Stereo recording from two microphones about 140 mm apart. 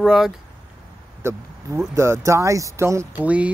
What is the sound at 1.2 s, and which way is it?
Speech, 20° right (ahead or behind).